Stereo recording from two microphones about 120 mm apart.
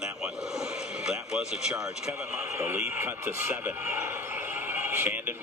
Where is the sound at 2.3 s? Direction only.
15° right (ahead or behind).